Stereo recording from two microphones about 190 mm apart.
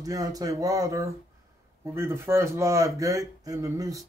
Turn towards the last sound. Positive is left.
turn(degrees=-20)  # may be behind; listen again after turning